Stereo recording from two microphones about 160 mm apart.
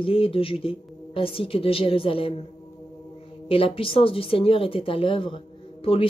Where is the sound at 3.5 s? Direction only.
35° left (ahead or behind).